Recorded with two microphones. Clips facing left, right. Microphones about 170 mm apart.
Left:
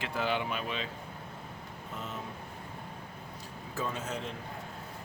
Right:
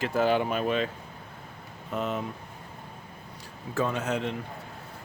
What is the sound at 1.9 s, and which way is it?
Speech, 70° right (ahead or behind).